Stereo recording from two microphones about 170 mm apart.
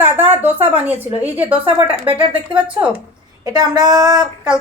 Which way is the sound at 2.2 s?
30° right (ahead or behind).